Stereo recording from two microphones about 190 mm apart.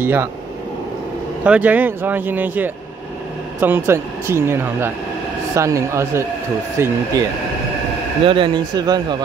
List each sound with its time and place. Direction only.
0.0 s speech: 10° right (ahead or behind)
1.4 s speech: 5° right (ahead or behind)
8.3 s speech: 25° right (ahead or behind)